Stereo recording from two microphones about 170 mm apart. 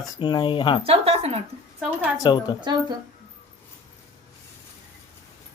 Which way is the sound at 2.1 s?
25° left (ahead or behind).